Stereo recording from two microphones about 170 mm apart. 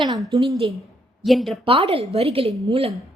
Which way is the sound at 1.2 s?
Centre (ahead or behind).